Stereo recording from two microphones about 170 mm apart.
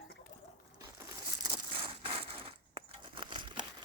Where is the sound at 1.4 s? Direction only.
30° right (ahead or behind).